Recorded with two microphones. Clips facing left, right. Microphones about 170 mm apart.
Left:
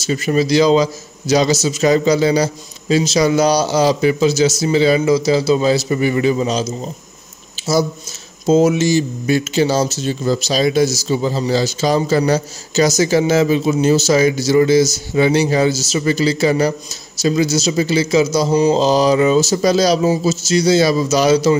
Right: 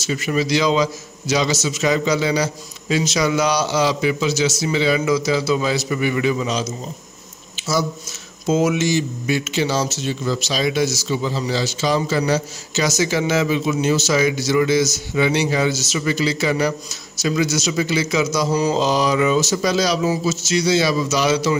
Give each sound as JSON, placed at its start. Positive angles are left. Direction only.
{"t": 0.0, "sound": "speech", "side_deg": 35}
{"t": 8.5, "sound": "speech", "side_deg": 30}
{"t": 18.8, "sound": "speech", "side_deg": 35}